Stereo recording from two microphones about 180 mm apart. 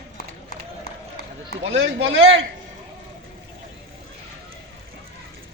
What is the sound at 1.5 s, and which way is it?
Speech, 90° right.